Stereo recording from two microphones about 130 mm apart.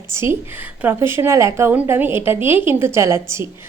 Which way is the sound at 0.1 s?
20° right (ahead or behind).